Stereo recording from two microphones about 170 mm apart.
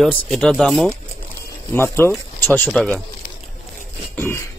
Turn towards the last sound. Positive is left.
turn(degrees=15)  # may be behind; listen again after turning